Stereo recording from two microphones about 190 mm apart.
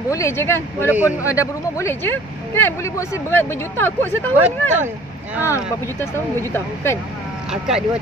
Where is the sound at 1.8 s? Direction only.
15° left (ahead or behind).